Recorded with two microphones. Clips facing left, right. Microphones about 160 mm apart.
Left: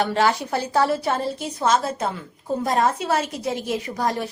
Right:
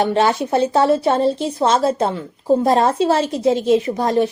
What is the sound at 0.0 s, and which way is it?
A woman's voice, 25° right (ahead or behind).